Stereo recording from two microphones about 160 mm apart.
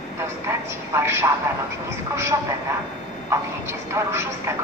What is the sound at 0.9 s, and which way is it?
Speech, 15° right (ahead or behind).